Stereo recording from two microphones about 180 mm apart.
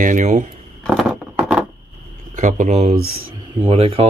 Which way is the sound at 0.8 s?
Centre (ahead or behind).